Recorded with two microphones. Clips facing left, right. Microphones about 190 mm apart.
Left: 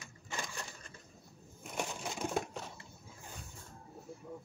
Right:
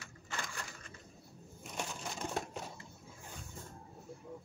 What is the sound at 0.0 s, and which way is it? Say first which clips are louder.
Bird: left 1 dB; 20° left (ahead or behind).